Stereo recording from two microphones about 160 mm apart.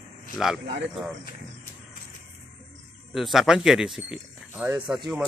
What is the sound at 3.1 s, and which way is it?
Speech, centre (ahead or behind).